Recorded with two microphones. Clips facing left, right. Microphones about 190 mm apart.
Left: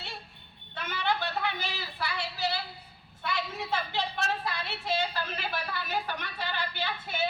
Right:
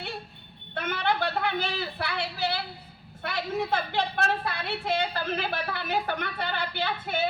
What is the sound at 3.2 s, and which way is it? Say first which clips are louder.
A woman's voice: right 5 dB; 55° right (ahead or behind).